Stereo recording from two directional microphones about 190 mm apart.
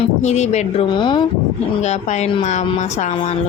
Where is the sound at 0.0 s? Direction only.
35° left (ahead or behind).